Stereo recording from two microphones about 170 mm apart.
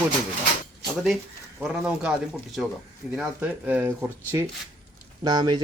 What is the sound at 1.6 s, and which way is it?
Speech, 5° right (ahead or behind).